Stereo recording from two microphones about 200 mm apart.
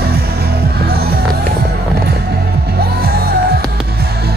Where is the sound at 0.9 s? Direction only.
50° right (ahead or behind).